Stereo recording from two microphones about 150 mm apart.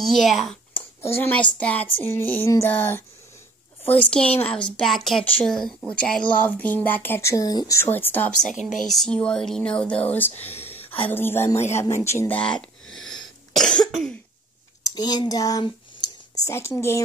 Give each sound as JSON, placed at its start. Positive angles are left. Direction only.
{"t": 0.0, "sound": "speech", "side_deg": 0}
{"t": 1.0, "sound": "speech", "side_deg": 15}
{"t": 4.1, "sound": "speech", "side_deg": 10}
{"t": 8.5, "sound": "speech", "side_deg": 0}
{"t": 10.4, "sound": "a sound", "side_deg": 45}
{"t": 11.1, "sound": "speech", "side_deg": 15}
{"t": 12.0, "sound": "cough", "side_deg": 15}
{"t": 14.8, "sound": "speech", "side_deg": 25}